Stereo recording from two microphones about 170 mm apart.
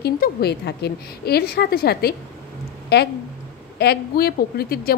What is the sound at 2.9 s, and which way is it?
A woman's voice, 80° left.